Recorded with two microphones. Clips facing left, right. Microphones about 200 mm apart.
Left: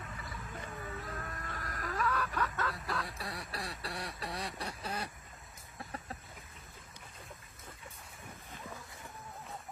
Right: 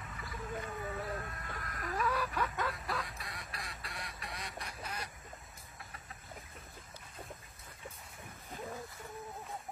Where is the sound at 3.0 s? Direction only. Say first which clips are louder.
Left 5 dB; 30° left (ahead or behind).